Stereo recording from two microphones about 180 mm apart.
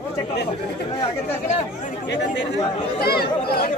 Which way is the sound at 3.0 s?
60° left (ahead or behind).